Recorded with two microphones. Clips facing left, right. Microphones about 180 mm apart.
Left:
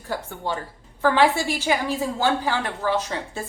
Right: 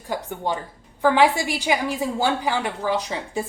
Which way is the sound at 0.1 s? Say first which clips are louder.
Right 2 dB; 15° right (ahead or behind).